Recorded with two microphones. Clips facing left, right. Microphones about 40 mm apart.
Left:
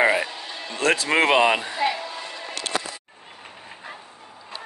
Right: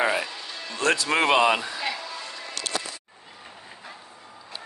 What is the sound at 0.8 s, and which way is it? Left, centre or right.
Speech, left.